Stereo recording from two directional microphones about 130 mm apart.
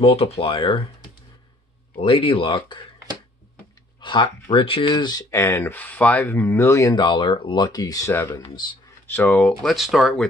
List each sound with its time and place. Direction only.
0.0 s speech: 50° left (ahead or behind)
2.0 s speech: 45° left (ahead or behind)
4.0 s speech: 40° left (ahead or behind)
8.1 s speech: 15° left (ahead or behind); by 10.2 s centre (ahead or behind)